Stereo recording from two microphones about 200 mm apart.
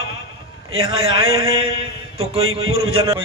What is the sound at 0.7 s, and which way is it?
Speech, 90° right.